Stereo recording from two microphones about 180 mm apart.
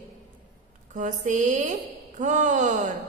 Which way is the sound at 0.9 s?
40° right (ahead or behind).